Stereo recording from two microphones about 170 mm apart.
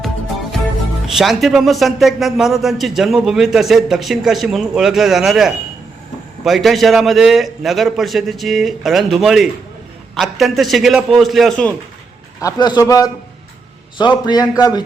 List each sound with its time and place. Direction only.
0.0 s music: centre (ahead or behind)
1.0 s a man's voice: centre (ahead or behind)
12.4 s a man's voice: 20° left (ahead or behind)
14.0 s a man's voice: 25° left (ahead or behind)